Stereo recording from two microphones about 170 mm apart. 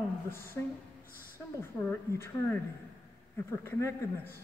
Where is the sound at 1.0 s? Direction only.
55° left (ahead or behind).